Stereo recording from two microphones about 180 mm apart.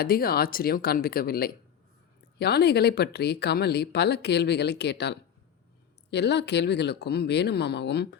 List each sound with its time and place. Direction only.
0.0 s speech: 55° left (ahead or behind)